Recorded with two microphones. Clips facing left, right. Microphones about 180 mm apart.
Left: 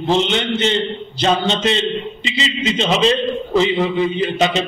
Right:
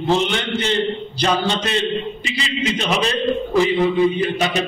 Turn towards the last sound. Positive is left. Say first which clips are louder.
# left 2 dB
turn(degrees=20)  # may be behind; listen again after turning